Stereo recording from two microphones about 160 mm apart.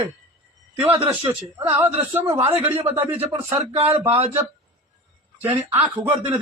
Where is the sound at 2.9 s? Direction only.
10° right (ahead or behind).